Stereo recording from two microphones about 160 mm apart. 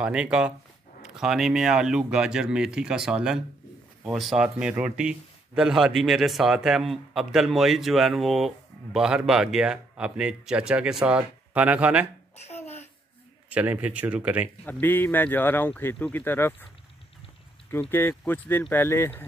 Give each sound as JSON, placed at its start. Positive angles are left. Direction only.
{"t": 0.0, "sound": "speech", "side_deg": -5}
{"t": 12.4, "sound": "a sound", "side_deg": 40}
{"t": 13.5, "sound": "speech", "side_deg": -10}
{"t": 14.6, "sound": "speech", "side_deg": 10}
{"t": 17.6, "sound": "speech", "side_deg": 15}